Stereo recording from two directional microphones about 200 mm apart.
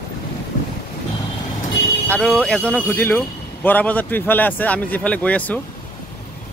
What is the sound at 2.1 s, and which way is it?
A man's voice, 5° left (ahead or behind).